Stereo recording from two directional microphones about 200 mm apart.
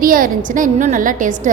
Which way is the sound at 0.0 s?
45° right (ahead or behind).